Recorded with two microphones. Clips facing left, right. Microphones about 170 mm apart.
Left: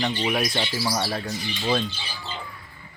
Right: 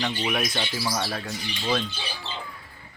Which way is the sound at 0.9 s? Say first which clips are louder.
Left 3 dB; 5° left (ahead or behind).